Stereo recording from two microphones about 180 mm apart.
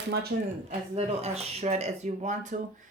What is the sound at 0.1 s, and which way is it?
Speech, 60° right (ahead or behind).